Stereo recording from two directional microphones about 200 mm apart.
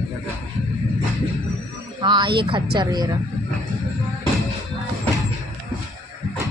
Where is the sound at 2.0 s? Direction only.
20° right (ahead or behind).